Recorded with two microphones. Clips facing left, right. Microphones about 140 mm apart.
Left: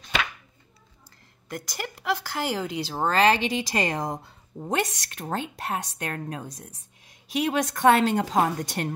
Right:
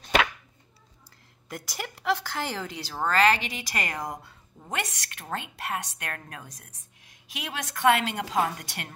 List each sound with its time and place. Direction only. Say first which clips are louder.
1.5 s a woman's voice: left 3 dB; centre (ahead or behind); by 8.9 s 35° left (ahead or behind)